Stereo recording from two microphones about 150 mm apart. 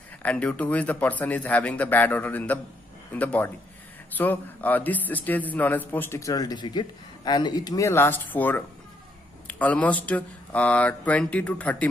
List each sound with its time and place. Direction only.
0.2 s speech: 10° left (ahead or behind)